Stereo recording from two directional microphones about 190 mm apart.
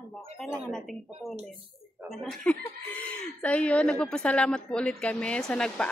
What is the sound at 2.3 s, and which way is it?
Speech, 5° left (ahead or behind).